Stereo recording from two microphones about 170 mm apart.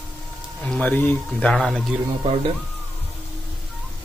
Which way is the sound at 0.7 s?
10° left (ahead or behind).